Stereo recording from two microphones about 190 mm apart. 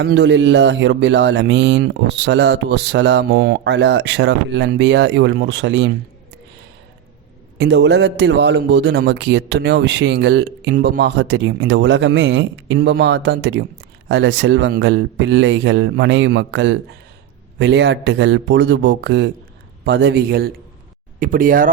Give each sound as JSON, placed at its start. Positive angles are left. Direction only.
{"t": 0.0, "sound": "speech", "side_deg": -70}
{"t": 7.6, "sound": "a man's voice", "side_deg": -65}